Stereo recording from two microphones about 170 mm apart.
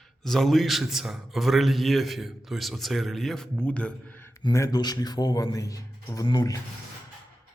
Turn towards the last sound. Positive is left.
turn(degrees=25)  # may be behind; listen again after turning